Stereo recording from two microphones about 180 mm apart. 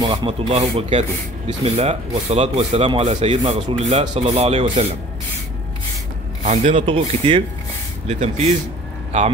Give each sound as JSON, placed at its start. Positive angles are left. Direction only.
{"t": 0.0, "sound": "speech", "side_deg": -25}
{"t": 6.4, "sound": "speech", "side_deg": -40}